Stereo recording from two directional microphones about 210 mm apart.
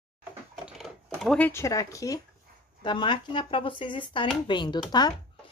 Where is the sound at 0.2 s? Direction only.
5° right (ahead or behind); by 2.1 s 15° left (ahead or behind).